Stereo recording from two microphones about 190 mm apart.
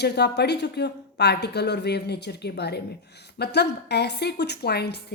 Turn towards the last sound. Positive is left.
turn(degrees=60)  # may be behind; listen again after turning